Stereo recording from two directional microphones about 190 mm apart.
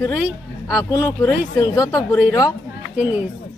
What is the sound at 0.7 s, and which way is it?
Speech, 15° left (ahead or behind).